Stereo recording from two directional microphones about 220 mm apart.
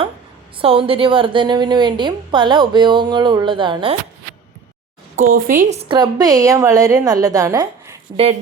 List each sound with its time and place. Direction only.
0.6 s a woman's voice: 25° right (ahead or behind)
5.1 s a woman's voice: 35° right (ahead or behind)